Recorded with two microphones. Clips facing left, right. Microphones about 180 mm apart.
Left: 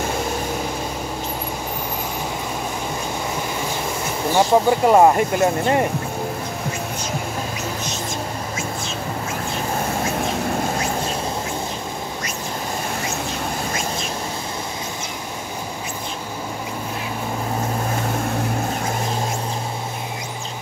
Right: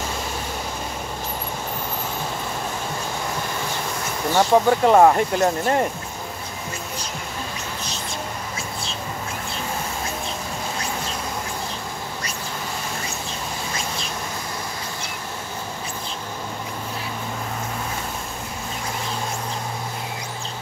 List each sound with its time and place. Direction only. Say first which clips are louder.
4.3 s speech: left 1 dB; 10° left (ahead or behind)